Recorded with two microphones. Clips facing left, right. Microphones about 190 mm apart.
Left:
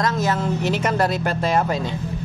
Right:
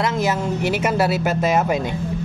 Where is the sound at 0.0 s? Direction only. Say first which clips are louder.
Right 1 dB; 10° right (ahead or behind).